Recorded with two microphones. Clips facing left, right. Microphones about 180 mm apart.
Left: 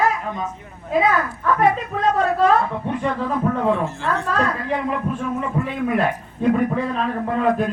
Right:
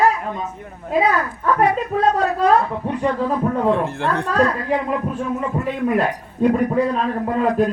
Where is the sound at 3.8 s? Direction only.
60° right (ahead or behind).